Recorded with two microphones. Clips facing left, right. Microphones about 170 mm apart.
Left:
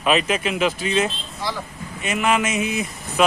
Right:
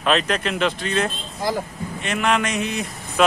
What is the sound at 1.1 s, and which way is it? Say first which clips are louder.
Speech: right 4 dB; 45° right (ahead or behind).